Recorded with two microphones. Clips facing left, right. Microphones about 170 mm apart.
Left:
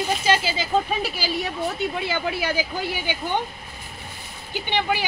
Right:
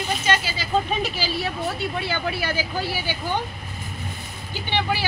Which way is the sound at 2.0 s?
15° left (ahead or behind).